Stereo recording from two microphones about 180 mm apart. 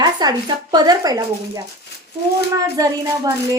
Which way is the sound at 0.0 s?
20° right (ahead or behind).